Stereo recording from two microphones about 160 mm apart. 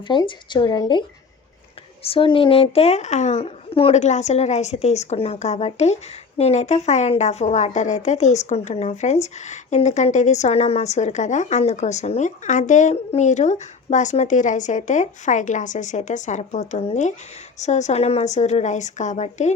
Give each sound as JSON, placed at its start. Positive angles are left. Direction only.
{"t": 0.1, "sound": "a woman's voice", "side_deg": 30}
{"t": 2.0, "sound": "a woman's voice", "side_deg": 35}